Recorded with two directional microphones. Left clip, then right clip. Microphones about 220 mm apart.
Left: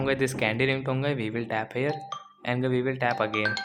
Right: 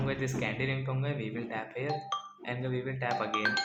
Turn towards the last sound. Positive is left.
turn(degrees=40)  # may be behind; listen again after turning